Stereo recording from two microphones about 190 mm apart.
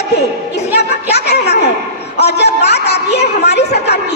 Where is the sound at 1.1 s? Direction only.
60° left (ahead or behind).